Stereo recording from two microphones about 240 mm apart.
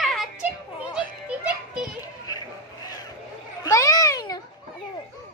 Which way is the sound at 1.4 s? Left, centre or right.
Centre.